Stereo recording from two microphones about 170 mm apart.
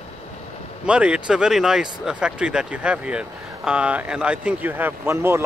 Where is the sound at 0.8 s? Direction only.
5° right (ahead or behind).